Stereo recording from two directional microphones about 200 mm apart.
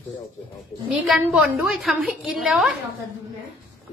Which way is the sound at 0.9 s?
5° right (ahead or behind).